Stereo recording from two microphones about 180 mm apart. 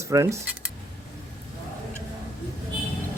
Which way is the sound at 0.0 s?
15° right (ahead or behind).